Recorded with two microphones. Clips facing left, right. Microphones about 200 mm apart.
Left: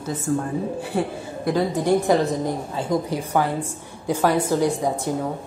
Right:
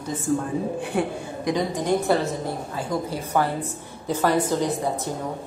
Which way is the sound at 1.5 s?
5° left (ahead or behind).